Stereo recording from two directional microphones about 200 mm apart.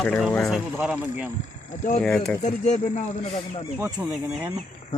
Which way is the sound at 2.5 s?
40° left (ahead or behind).